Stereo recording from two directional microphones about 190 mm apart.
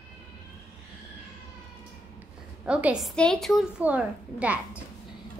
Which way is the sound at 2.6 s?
5° right (ahead or behind).